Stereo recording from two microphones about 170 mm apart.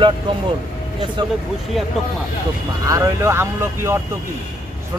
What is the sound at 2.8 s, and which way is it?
Speech, 20° right (ahead or behind).